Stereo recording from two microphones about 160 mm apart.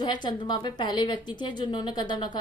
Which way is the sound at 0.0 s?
30° left (ahead or behind).